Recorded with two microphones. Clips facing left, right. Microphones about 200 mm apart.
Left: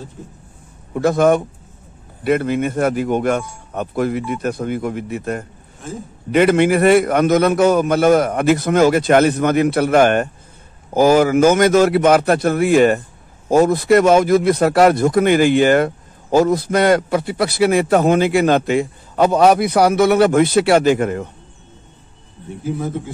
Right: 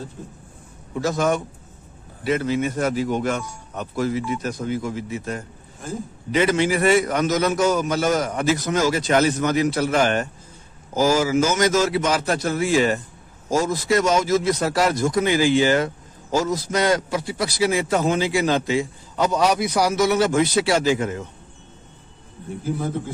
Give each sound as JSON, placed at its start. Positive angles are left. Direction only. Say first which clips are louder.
{"t": 0.9, "sound": "a man's voice", "louder": "left 7 dB", "side_deg": 55}
{"t": 5.8, "sound": "a man's voice", "louder": "left 1 dB", "side_deg": 0}
{"t": 6.3, "sound": "a man's voice", "louder": "left 6 dB", "side_deg": 55}